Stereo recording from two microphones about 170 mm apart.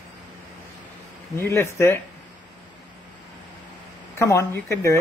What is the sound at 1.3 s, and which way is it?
Speech, 15° left (ahead or behind).